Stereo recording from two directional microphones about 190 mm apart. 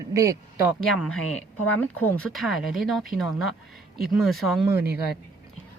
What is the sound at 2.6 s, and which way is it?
Speech, 90° left.